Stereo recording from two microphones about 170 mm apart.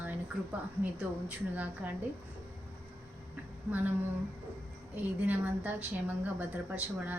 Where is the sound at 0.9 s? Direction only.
10° right (ahead or behind).